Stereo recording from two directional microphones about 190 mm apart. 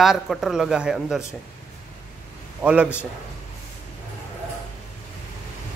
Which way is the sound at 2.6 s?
5° right (ahead or behind).